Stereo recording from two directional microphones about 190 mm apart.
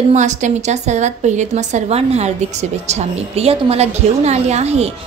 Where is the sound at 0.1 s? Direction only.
40° right (ahead or behind).